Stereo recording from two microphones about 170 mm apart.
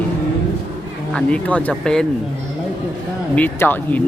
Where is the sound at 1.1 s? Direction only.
5° left (ahead or behind).